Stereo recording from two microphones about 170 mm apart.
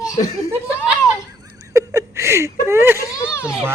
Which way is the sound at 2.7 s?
15° right (ahead or behind).